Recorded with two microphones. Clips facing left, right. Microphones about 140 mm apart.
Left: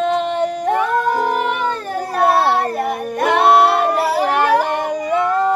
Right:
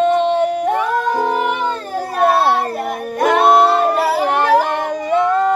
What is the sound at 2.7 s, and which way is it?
Child singing, 5° right (ahead or behind).